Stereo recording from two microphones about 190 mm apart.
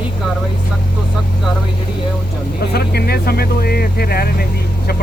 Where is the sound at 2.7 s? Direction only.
55° left (ahead or behind).